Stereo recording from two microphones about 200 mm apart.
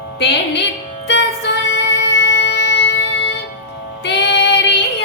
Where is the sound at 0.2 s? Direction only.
60° left (ahead or behind).